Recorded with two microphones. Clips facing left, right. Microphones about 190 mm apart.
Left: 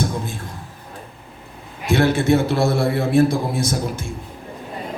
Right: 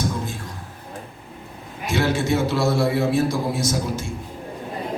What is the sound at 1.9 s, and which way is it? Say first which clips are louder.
A man's voice: left 5 dB; 55° left (ahead or behind).